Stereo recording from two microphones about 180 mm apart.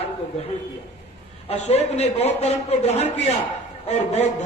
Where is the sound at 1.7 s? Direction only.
35° left (ahead or behind).